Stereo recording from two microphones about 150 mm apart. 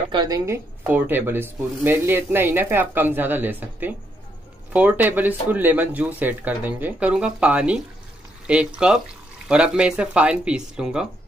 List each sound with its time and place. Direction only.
0.1 s a woman's voice: 25° right (ahead or behind)
0.8 s speech: 15° right (ahead or behind)